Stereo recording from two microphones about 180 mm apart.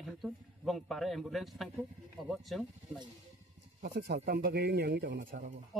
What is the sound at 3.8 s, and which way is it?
A man's voice, 55° right (ahead or behind).